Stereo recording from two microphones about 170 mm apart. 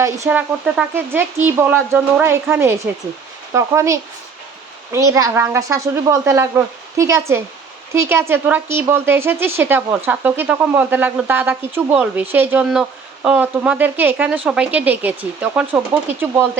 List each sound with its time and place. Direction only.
0.3 s speech: 5° right (ahead or behind)